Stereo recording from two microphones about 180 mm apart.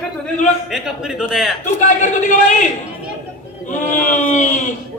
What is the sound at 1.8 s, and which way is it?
Speech, 45° left (ahead or behind).